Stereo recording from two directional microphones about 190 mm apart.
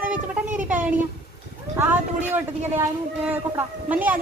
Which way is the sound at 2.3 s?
10° right (ahead or behind).